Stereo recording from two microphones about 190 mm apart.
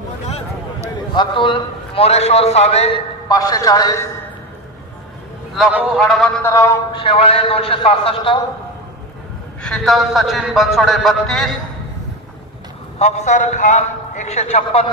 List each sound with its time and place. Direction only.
1.1 s a man's voice: 25° left (ahead or behind)
3.3 s a man's voice: 20° left (ahead or behind)
5.5 s a man's voice: 5° right (ahead or behind)
6.5 s a man's voice: 15° left (ahead or behind)
6.9 s a man's voice: 30° left (ahead or behind)
9.6 s a man's voice: 5° left (ahead or behind)
13.0 s a man's voice: 35° left (ahead or behind)